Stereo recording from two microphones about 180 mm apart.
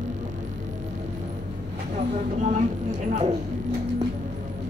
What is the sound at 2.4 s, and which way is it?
Speech, 45° right (ahead or behind).